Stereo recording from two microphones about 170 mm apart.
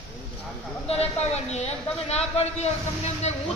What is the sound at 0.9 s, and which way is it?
A man's voice, 40° left (ahead or behind).